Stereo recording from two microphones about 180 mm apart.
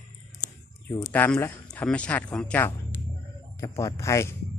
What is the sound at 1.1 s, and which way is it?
Speech, 10° left (ahead or behind).